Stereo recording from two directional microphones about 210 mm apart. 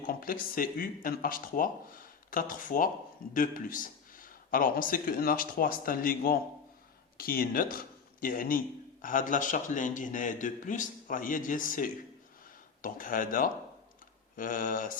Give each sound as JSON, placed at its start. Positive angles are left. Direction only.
{"t": 0.0, "sound": "a man's voice", "side_deg": 45}